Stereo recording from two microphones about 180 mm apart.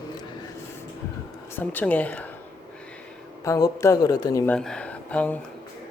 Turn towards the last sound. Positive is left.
turn(degrees=10)  # may be behind; listen again after turning